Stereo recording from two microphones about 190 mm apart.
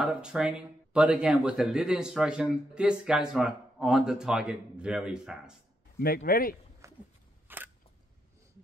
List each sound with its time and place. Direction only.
0.0 s speech: 5° right (ahead or behind)
5.9 s a man's voice: 50° left (ahead or behind)
6.8 s a sound: 15° right (ahead or behind)